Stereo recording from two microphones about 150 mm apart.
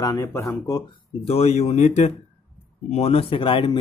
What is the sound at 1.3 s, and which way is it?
Speech, 45° left (ahead or behind).